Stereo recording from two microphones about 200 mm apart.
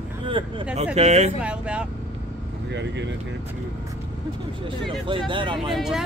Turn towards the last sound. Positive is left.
turn(degrees=0)  # may be behind; listen again after turning